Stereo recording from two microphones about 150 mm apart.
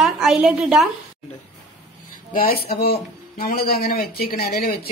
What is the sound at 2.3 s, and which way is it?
Speech, 70° left (ahead or behind).